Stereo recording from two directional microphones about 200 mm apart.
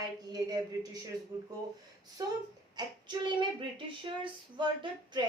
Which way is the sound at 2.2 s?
20° right (ahead or behind).